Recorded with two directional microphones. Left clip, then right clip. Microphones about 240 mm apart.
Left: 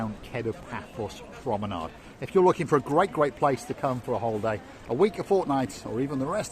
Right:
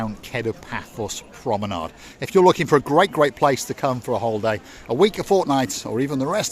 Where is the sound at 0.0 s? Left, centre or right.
Right.